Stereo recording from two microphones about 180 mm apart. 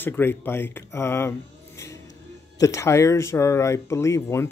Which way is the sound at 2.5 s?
15° left (ahead or behind).